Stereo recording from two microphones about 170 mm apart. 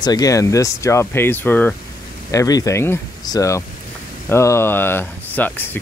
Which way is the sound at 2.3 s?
20° left (ahead or behind).